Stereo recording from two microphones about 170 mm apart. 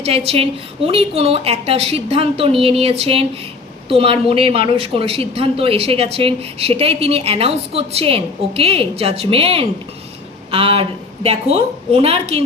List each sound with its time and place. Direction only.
0.0 s speech: 35° right (ahead or behind)